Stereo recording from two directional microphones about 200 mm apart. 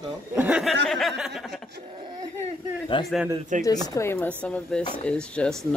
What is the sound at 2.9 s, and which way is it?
Speech, 25° left (ahead or behind).